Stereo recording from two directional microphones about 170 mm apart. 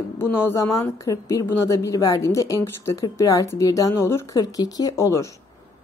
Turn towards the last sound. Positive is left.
turn(degrees=20)  # may be behind; listen again after turning